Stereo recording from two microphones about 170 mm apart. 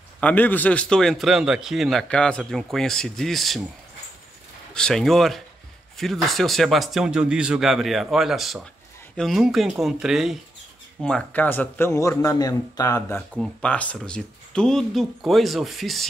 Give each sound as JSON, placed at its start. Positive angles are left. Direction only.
{"t": 0.2, "sound": "a man's voice", "side_deg": 10}
{"t": 4.7, "sound": "a man's voice", "side_deg": 5}
{"t": 13.3, "sound": "a man's voice", "side_deg": 5}